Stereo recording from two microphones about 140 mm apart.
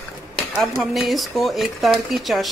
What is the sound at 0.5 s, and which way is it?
Speech, centre (ahead or behind).